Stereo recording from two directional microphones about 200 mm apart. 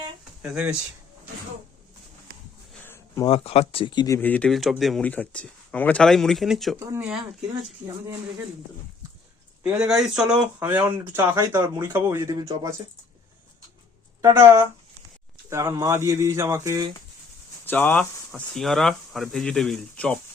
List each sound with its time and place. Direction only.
0.5 s speech: 5° right (ahead or behind)
2.7 s a sound: 10° left (ahead or behind)
3.2 s speech: 30° left (ahead or behind); by 7.2 s 10° right (ahead or behind)
9.6 s speech: 5° right (ahead or behind)
14.2 s speech: 15° right (ahead or behind)
17.7 s speech: 10° left (ahead or behind)